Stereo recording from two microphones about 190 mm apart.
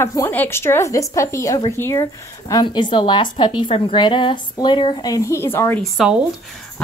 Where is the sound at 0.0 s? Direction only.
15° left (ahead or behind).